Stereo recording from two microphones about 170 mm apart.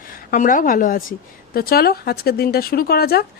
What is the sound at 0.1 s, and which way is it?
A woman's voice, 55° left (ahead or behind).